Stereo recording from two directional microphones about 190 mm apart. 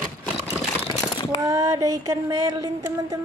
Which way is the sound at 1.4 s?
15° right (ahead or behind).